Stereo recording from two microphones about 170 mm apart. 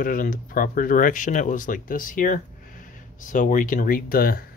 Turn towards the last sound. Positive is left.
turn(degrees=60)  # may be behind; listen again after turning